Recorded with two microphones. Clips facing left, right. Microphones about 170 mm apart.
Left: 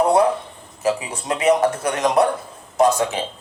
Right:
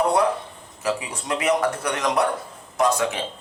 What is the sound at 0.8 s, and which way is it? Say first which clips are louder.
Speech: left 4 dB; 25° left (ahead or behind).